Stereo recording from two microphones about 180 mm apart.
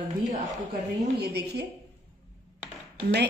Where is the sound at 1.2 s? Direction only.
65° right (ahead or behind).